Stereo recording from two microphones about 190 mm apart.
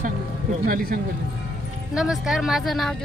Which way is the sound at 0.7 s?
45° right (ahead or behind).